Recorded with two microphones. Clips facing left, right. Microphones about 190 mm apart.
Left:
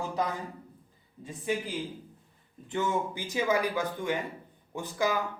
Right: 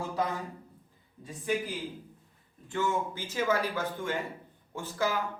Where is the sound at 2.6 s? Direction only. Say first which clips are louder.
Left 1 dB; 20° left (ahead or behind).